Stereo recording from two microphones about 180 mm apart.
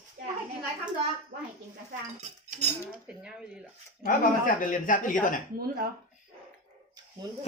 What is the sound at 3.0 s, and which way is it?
Speech, 5° right (ahead or behind).